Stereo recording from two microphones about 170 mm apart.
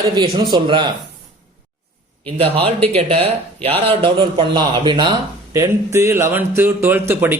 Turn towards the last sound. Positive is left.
turn(degrees=-10)  # may be behind; listen again after turning